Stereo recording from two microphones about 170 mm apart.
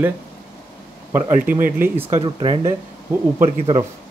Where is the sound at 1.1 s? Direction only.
10° right (ahead or behind).